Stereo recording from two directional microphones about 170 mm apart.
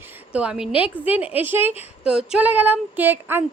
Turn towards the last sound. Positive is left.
turn(degrees=-10)  # may be behind; listen again after turning